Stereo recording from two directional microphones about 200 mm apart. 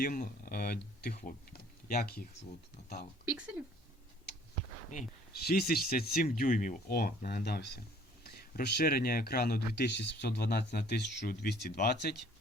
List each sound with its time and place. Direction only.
0.0 s speech: 45° left (ahead or behind)
3.2 s speech: 5° right (ahead or behind)
5.5 s speech: 50° left (ahead or behind)